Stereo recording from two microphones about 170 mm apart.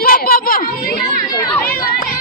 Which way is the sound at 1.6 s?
60° left (ahead or behind).